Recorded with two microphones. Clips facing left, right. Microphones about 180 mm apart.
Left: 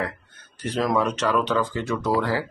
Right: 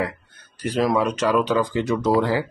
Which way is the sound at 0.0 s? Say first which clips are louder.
Right 3 dB; 10° right (ahead or behind).